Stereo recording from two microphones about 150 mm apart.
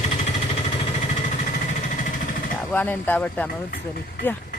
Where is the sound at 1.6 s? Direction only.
55° left (ahead or behind).